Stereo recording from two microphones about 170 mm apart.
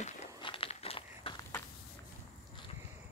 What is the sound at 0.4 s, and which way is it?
Crumpling, 30° left (ahead or behind).